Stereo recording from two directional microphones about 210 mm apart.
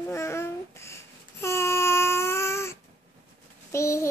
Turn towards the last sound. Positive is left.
turn(degrees=15)  # may be behind; listen again after turning